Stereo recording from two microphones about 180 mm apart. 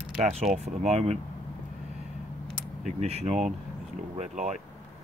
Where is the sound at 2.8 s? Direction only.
35° right (ahead or behind).